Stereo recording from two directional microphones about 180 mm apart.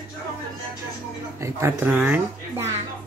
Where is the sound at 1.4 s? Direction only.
15° right (ahead or behind).